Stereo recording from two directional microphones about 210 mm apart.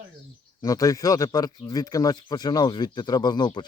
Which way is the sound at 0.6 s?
15° left (ahead or behind).